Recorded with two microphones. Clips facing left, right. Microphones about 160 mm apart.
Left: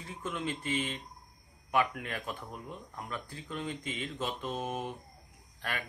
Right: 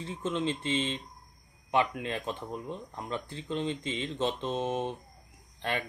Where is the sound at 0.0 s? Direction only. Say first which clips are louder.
Right 6 dB; 25° right (ahead or behind).